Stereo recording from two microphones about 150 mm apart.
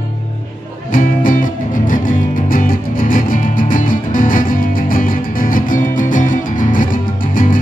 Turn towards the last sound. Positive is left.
turn(degrees=65)  # may be behind; listen again after turning